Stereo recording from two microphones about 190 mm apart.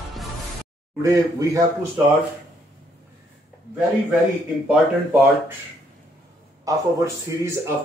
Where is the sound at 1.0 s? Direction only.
20° right (ahead or behind).